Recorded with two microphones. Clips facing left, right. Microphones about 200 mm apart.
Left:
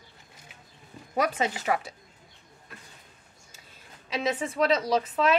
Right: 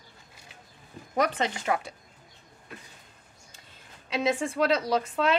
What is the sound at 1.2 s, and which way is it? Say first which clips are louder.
Speech: even; 10° left (ahead or behind).